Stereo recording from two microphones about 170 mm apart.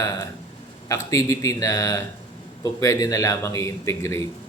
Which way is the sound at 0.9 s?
15° left (ahead or behind).